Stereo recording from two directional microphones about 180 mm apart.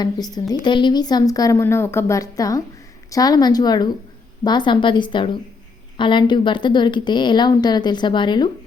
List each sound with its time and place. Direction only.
0.0 s a woman's voice: 20° left (ahead or behind)